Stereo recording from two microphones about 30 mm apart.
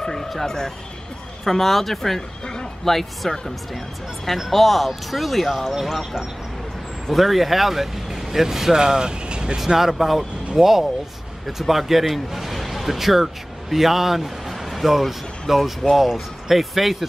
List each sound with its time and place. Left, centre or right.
0.0 s a sound: centre
0.5 s speech: centre
1.4 s speech: centre
2.4 s a sound: left
2.8 s speech: centre
7.1 s speech: centre; by 9.6 s right
9.8 s speech: centre